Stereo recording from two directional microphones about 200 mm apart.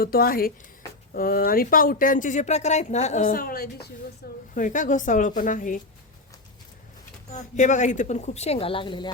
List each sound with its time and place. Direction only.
0.0 s speech: 50° left (ahead or behind)
4.5 s a woman's voice: 40° left (ahead or behind)
7.3 s a woman's voice: 40° left (ahead or behind)